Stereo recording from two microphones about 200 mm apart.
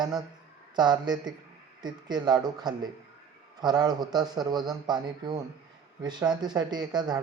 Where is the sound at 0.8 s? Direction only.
20° right (ahead or behind).